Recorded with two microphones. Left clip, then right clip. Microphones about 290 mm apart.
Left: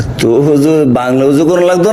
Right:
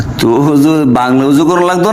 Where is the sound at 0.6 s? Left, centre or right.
Right.